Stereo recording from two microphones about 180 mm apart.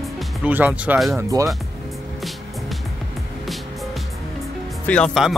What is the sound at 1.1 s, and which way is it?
Speech, 20° right (ahead or behind).